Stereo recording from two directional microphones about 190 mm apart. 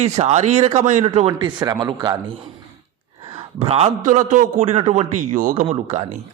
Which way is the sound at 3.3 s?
30° right (ahead or behind).